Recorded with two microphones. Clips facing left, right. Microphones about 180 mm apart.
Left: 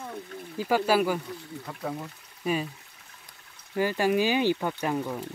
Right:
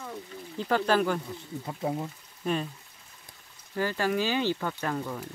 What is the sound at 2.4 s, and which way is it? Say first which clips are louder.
Speech: left 1 dB; 5° left (ahead or behind).